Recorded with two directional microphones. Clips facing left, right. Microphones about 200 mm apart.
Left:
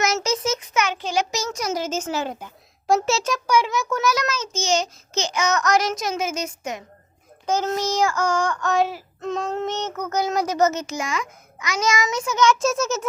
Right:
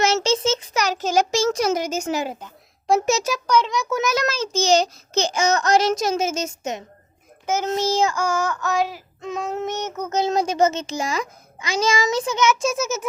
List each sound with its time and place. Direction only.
0.0 s a child's voice: 30° right (ahead or behind)
1.5 s child singing: 30° right (ahead or behind)
1.8 s a woman's voice: 15° right (ahead or behind)
2.4 s a sound: centre (ahead or behind)
3.1 s a woman's voice: 15° right (ahead or behind)
3.3 s a child's voice: 10° left (ahead or behind)
4.0 s a child's voice: 30° right (ahead or behind)
5.3 s child singing: 30° right (ahead or behind)
8.1 s child singing: 10° right (ahead or behind); by 12.5 s 30° right (ahead or behind)
12.5 s a child's voice: centre (ahead or behind)